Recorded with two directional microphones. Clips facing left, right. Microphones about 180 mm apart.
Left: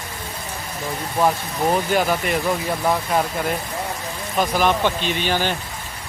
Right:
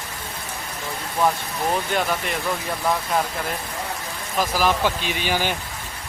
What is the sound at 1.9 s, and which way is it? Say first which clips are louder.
Speech: left 4 dB; 5° left (ahead or behind).